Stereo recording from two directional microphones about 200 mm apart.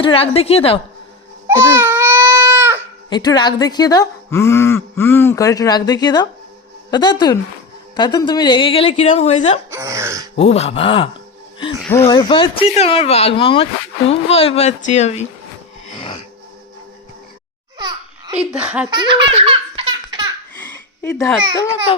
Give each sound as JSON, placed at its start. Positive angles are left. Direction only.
{"t": 0.0, "sound": "speech", "side_deg": 25}
{"t": 1.5, "sound": "baby cry", "side_deg": -10}
{"t": 3.1, "sound": "speech", "side_deg": 20}
{"t": 9.6, "sound": "throat clearing", "side_deg": -15}
{"t": 10.3, "sound": "speech", "side_deg": 30}
{"t": 11.8, "sound": "speech", "side_deg": 10}
{"t": 17.7, "sound": "babbling", "side_deg": -20}
{"t": 18.3, "sound": "speech", "side_deg": -5}
{"t": 18.9, "sound": "baby laughter", "side_deg": -25}
{"t": 21.0, "sound": "a child's voice", "side_deg": 15}